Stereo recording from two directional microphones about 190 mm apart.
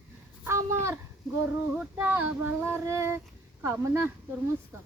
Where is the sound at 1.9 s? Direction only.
10° right (ahead or behind).